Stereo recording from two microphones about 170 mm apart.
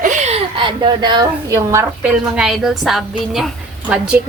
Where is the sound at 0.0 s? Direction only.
45° right (ahead or behind); by 1.9 s 15° right (ahead or behind).